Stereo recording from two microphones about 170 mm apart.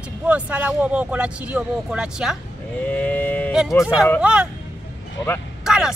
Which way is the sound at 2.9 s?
10° left (ahead or behind).